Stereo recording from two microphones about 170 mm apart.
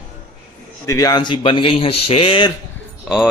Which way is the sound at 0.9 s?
20° left (ahead or behind).